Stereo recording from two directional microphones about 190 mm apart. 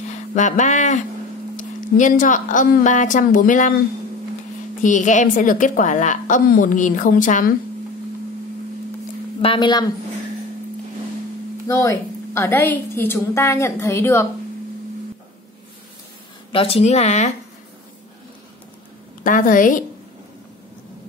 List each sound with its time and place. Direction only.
0.1 s a woman's voice: 40° left (ahead or behind)
4.8 s a woman's voice: 40° left (ahead or behind)
9.4 s speech: 25° left (ahead or behind)
11.6 s a woman's voice: 15° left (ahead or behind)
16.5 s speech: 30° left (ahead or behind)
19.2 s a woman's voice: 45° left (ahead or behind)